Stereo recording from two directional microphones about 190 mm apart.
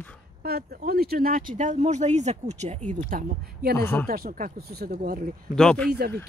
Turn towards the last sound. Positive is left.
turn(degrees=5)  # may be behind; listen again after turning